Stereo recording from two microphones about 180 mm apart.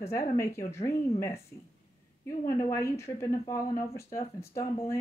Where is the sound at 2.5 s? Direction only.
15° left (ahead or behind).